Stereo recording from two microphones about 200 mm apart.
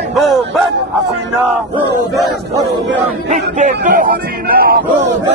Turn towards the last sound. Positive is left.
turn(degrees=-45)  # may be behind; listen again after turning